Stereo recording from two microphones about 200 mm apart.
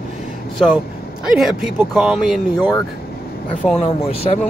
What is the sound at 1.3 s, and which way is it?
Speech, centre (ahead or behind).